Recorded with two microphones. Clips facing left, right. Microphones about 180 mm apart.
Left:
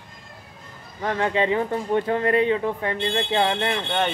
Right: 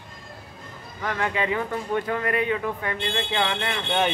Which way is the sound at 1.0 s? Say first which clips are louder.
Left 4 dB; 30° left (ahead or behind).